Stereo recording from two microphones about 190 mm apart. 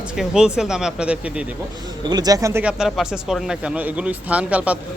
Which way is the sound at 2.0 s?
20° right (ahead or behind).